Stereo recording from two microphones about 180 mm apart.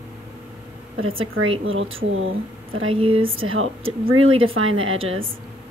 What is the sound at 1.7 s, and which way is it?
A woman's voice, 90° right.